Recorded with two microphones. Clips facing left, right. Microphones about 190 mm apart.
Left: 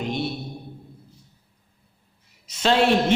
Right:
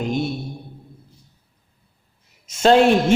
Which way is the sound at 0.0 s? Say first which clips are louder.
Right 4 dB; 45° right (ahead or behind).